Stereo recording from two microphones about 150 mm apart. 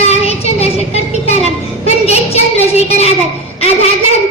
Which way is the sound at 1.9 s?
45° left (ahead or behind).